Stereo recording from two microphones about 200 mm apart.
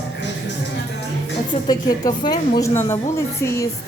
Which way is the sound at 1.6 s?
20° left (ahead or behind).